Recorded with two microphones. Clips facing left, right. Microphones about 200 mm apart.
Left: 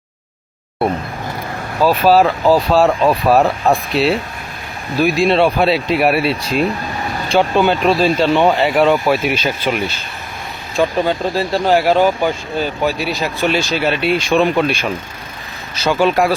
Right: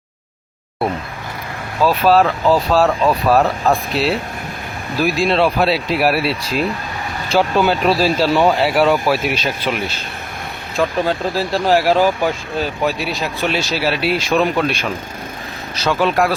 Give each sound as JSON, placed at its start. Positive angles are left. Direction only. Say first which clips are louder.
{"t": 1.8, "sound": "speech", "louder": "left 2 dB", "side_deg": 0}
{"t": 10.8, "sound": "speech", "louder": "left 2 dB", "side_deg": 0}